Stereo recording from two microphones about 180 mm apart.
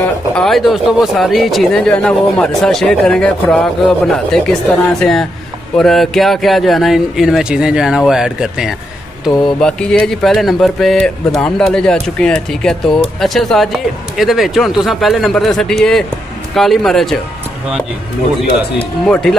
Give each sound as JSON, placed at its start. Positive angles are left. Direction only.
{"t": 0.3, "sound": "mantra", "side_deg": 0}
{"t": 19.0, "sound": "mantra", "side_deg": 5}